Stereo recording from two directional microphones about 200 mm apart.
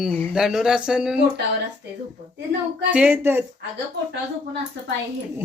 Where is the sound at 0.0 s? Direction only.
Centre (ahead or behind).